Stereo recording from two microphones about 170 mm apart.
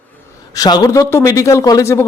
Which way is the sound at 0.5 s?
20° left (ahead or behind).